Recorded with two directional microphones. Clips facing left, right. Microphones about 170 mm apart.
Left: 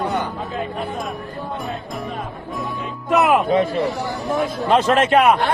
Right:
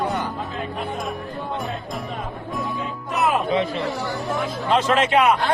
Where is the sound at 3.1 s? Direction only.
90° left.